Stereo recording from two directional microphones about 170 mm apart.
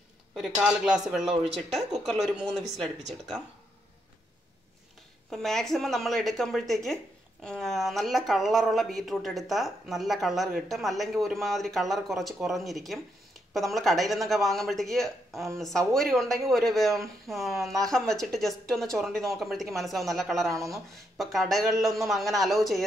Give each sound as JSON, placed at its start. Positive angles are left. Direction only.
{"t": 0.7, "sound": "speech", "side_deg": -5}
{"t": 5.3, "sound": "speech", "side_deg": 0}
{"t": 20.5, "sound": "speech", "side_deg": -20}
{"t": 20.9, "sound": "speech", "side_deg": 0}